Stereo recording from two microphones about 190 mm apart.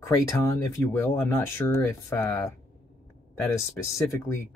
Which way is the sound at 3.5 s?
15° left (ahead or behind).